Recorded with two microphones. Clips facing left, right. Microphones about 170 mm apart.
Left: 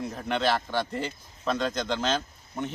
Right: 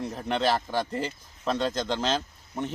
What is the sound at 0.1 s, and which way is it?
Speech, centre (ahead or behind).